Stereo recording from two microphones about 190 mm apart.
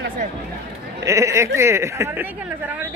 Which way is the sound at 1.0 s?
15° right (ahead or behind).